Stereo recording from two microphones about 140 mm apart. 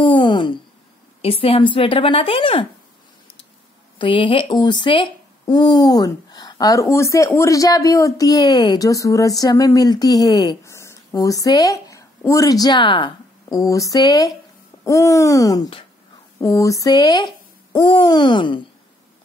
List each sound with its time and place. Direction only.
0.0 s a sound: 35° left (ahead or behind)
1.2 s a woman's voice: 45° left (ahead or behind)
4.0 s speech: 35° left (ahead or behind)
13.6 s a woman's voice: 25° left (ahead or behind)